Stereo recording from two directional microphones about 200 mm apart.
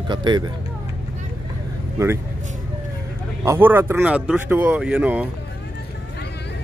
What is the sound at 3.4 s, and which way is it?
Speech, 10° right (ahead or behind).